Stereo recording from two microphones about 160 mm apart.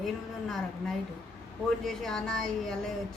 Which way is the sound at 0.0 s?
Centre (ahead or behind).